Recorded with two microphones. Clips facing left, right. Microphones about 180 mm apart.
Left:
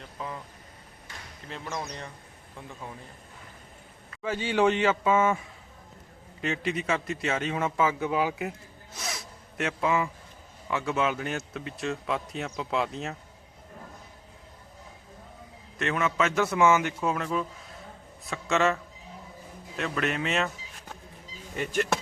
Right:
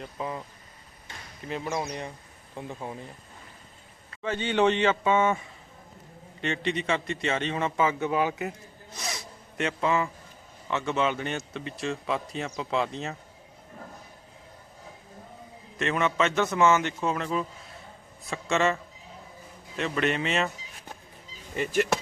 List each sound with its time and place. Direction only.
0.2 s speech: 10° right (ahead or behind)
1.5 s speech: 10° right (ahead or behind)
4.2 s speech: 5° left (ahead or behind)
6.4 s speech: 5° left (ahead or behind)
9.0 s zipper: centre (ahead or behind)
10.7 s speech: 5° left (ahead or behind)
15.8 s speech: centre (ahead or behind)
21.5 s speech: centre (ahead or behind)